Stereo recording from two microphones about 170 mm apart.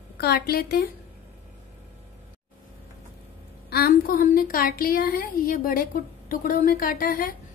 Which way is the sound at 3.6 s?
65° left (ahead or behind).